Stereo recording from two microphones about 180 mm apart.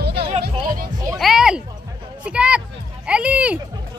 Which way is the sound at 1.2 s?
Centre (ahead or behind).